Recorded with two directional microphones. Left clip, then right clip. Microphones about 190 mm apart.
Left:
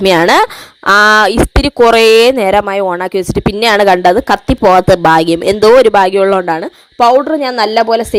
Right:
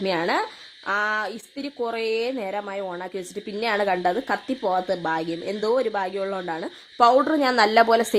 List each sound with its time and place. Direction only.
0.0 s speech: 50° left (ahead or behind)
7.0 s speech: 25° left (ahead or behind)